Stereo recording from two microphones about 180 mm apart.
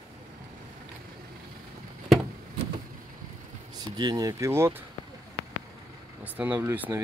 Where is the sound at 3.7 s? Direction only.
20° right (ahead or behind).